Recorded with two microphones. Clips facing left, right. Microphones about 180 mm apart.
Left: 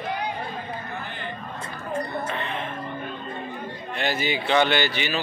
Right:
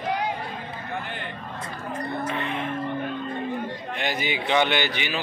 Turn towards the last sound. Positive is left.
turn(degrees=-15)  # may be behind; listen again after turning